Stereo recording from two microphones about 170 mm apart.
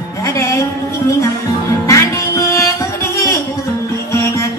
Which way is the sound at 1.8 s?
15° left (ahead or behind).